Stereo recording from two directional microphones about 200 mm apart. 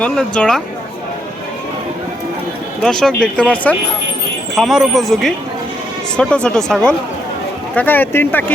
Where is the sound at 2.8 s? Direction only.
5° left (ahead or behind).